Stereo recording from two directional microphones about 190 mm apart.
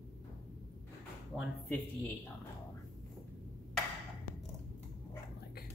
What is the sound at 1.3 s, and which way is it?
Music, centre (ahead or behind).